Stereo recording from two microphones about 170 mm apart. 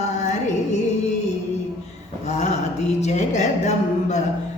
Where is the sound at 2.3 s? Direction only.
40° left (ahead or behind).